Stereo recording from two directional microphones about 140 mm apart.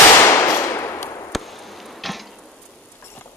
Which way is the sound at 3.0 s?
20° left (ahead or behind).